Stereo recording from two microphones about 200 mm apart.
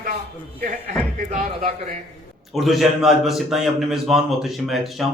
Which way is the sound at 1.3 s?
35° right (ahead or behind).